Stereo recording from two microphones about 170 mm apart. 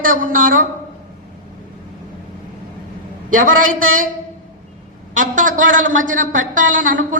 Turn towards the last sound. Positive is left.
turn(degrees=-50)  # may be behind; listen again after turning